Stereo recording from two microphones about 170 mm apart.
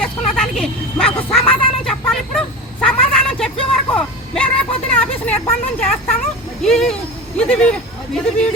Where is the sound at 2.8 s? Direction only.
5° left (ahead or behind).